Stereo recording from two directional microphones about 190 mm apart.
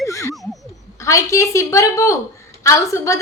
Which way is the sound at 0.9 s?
15° left (ahead or behind).